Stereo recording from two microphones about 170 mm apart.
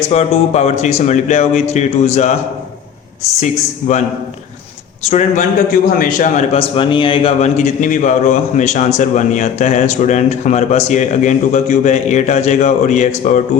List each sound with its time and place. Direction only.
0.1 s speech: 40° left (ahead or behind)
3.4 s a man's voice: 45° left (ahead or behind)
5.0 s a man's voice: 45° left (ahead or behind)